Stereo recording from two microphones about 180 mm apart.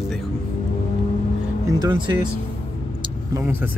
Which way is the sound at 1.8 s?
25° right (ahead or behind).